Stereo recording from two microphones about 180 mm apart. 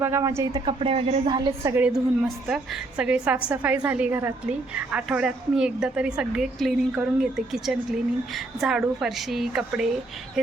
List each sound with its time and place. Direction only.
0.0 s a woman's voice: 15° right (ahead or behind)